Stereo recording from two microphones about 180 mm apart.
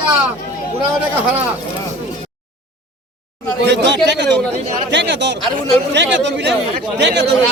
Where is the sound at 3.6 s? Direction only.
70° right (ahead or behind).